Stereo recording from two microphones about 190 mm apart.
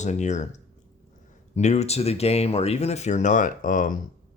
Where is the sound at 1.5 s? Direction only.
35° left (ahead or behind).